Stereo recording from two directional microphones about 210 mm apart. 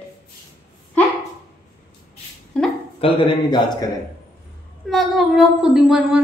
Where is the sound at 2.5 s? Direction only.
5° left (ahead or behind).